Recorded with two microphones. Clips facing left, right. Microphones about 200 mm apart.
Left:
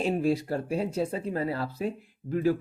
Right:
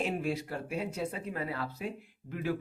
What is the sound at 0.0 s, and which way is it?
Speech, 35° left (ahead or behind).